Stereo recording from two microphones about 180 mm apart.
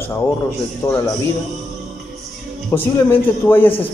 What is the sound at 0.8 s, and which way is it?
Speech, 20° left (ahead or behind).